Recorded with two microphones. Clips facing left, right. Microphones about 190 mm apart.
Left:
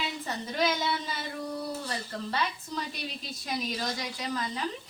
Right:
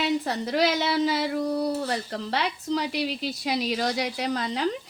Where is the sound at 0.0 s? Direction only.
75° right (ahead or behind).